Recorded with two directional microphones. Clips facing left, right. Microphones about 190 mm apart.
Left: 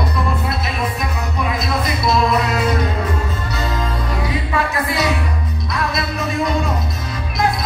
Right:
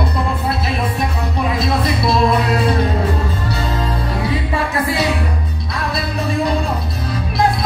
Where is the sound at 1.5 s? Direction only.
30° right (ahead or behind).